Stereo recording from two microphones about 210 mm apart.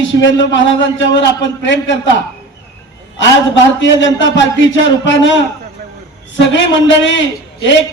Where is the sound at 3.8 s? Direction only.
60° left (ahead or behind).